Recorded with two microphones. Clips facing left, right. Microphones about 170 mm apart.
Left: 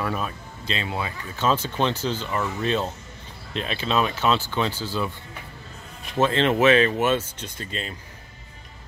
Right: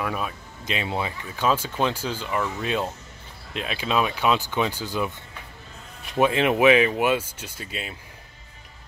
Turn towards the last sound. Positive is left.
turn(degrees=-5)  # may be behind; listen again after turning